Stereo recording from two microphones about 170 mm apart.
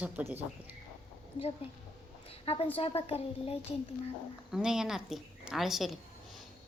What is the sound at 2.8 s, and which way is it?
Speech, 35° left (ahead or behind).